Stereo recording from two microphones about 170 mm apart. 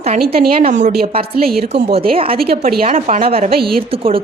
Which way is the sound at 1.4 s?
60° right (ahead or behind).